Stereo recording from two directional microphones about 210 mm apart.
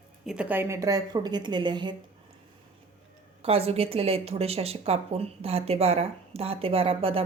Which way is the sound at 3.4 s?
30° right (ahead or behind).